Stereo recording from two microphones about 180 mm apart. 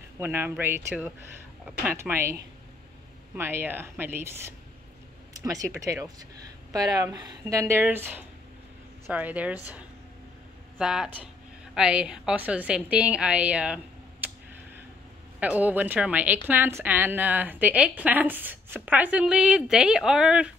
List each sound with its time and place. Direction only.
0.2 s a woman's voice: 10° right (ahead or behind)
3.3 s a woman's voice: 15° right (ahead or behind)
15.4 s a woman's voice: 10° right (ahead or behind)